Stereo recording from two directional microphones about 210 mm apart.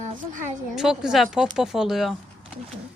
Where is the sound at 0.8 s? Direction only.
Centre (ahead or behind).